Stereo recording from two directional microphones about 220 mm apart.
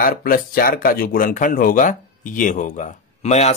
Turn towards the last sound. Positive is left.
turn(degrees=30)  # may be behind; listen again after turning